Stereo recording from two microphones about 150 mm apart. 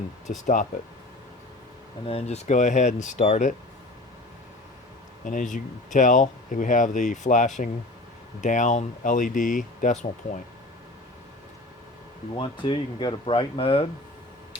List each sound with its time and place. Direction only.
0.4 s speech: 60° left (ahead or behind)
2.0 s speech: 40° left (ahead or behind)
5.2 s speech: 60° left (ahead or behind)
12.4 s speech: 35° left (ahead or behind)